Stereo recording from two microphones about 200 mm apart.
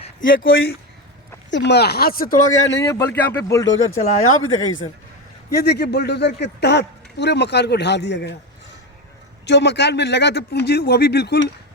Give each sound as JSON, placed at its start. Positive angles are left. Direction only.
{"t": 0.3, "sound": "speech", "side_deg": 70}
{"t": 2.8, "sound": "speech", "side_deg": 15}
{"t": 3.7, "sound": "speech", "side_deg": 80}
{"t": 5.5, "sound": "a man's voice", "side_deg": 55}
{"t": 9.5, "sound": "a man's voice", "side_deg": 60}